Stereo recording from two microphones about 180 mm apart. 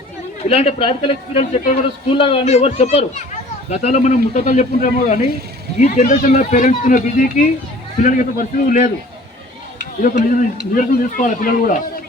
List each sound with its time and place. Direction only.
0.4 s a man's voice: 35° left (ahead or behind)
10.0 s a man's voice: 50° left (ahead or behind)